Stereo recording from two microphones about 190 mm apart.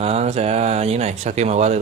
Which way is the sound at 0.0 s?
35° right (ahead or behind).